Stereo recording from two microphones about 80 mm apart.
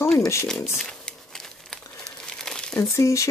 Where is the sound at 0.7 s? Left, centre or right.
Centre.